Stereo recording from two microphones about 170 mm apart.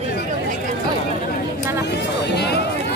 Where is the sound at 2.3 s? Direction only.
75° left (ahead or behind).